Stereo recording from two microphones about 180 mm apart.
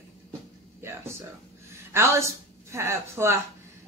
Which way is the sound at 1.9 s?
15° right (ahead or behind).